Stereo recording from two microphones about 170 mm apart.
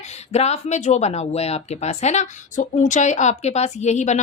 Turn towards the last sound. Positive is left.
turn(degrees=45)  # may be behind; listen again after turning